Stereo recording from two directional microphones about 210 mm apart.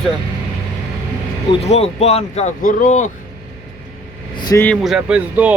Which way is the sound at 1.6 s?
30° left (ahead or behind).